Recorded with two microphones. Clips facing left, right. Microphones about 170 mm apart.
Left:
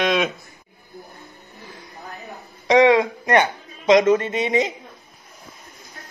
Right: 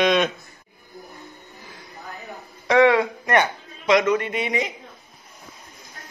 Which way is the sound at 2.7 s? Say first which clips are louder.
Left 2 dB; 15° left (ahead or behind).